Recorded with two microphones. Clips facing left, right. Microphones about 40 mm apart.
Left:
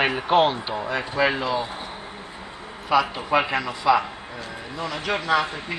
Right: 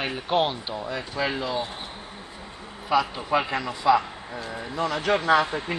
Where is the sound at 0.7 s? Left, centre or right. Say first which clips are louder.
Left 5 dB; left.